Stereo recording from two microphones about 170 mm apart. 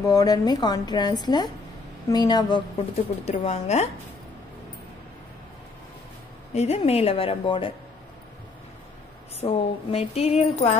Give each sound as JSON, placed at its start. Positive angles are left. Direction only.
{"t": 0.0, "sound": "a woman's voice", "side_deg": 20}
{"t": 6.5, "sound": "speech", "side_deg": 40}
{"t": 9.4, "sound": "speech", "side_deg": 35}